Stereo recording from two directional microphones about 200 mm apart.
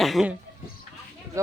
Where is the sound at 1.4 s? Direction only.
15° right (ahead or behind).